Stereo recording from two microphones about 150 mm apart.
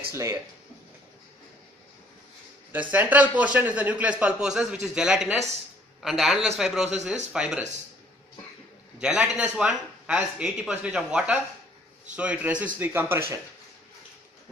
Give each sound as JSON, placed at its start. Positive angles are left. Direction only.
{"t": 0.1, "sound": "speech", "side_deg": -20}
{"t": 2.7, "sound": "a man's voice", "side_deg": -10}
{"t": 8.9, "sound": "a man's voice", "side_deg": -5}